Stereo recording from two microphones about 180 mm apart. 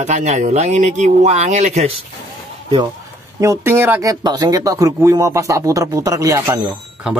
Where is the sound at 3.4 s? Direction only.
15° right (ahead or behind).